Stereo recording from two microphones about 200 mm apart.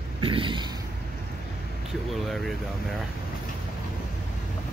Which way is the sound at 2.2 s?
Centre (ahead or behind).